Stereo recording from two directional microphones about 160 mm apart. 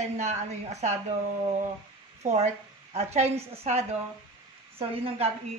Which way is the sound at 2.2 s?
45° right (ahead or behind).